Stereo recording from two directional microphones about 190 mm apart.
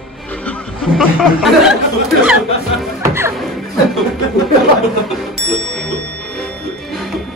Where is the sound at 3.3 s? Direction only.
Centre (ahead or behind).